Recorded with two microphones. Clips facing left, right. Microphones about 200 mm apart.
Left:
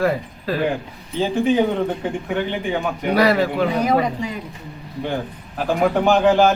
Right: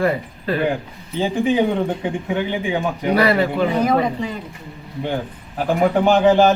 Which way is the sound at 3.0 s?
Centre (ahead or behind).